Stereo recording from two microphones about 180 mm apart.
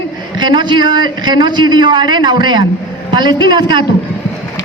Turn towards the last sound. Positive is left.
turn(degrees=-25)  # may be behind; listen again after turning